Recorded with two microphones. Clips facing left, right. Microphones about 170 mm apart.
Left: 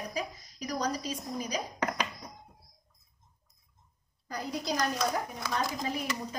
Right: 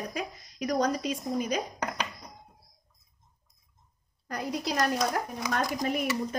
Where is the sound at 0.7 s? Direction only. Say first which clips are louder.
Right 5 dB; 55° right (ahead or behind).